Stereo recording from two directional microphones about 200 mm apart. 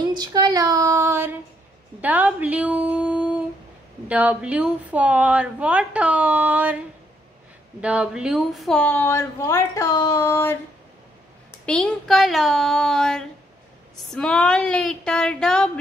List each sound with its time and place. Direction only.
0.1 s a sound: 20° right (ahead or behind)
2.0 s a woman's voice: 10° right (ahead or behind)
7.8 s speech: 5° right (ahead or behind); by 10.6 s 10° left (ahead or behind)
11.6 s a woman's voice: 5° left (ahead or behind)